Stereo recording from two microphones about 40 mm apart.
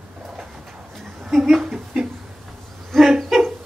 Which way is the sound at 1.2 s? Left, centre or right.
Centre.